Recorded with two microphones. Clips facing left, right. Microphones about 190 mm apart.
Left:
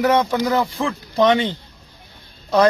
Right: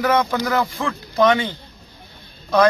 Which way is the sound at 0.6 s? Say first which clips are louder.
Left 2 dB; 30° left (ahead or behind).